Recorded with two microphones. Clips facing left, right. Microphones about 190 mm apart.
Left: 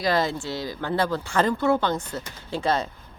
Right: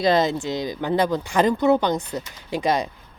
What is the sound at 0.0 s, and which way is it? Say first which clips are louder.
Speech: right 5 dB; 20° right (ahead or behind).